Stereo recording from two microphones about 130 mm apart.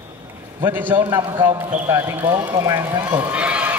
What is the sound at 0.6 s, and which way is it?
A man's voice, 15° right (ahead or behind).